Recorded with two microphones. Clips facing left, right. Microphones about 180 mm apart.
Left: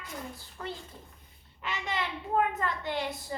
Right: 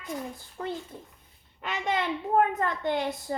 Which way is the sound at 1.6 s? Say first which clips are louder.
Right 5 dB; 50° right (ahead or behind).